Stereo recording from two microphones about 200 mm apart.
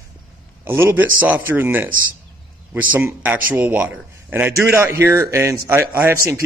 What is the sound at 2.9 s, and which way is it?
Speech, 10° right (ahead or behind).